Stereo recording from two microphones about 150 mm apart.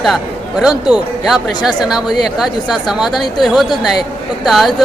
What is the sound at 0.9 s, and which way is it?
A man's voice, 5° right (ahead or behind).